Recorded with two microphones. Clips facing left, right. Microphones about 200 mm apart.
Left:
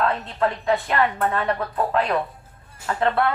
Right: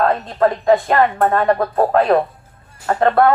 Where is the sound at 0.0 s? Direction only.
45° right (ahead or behind).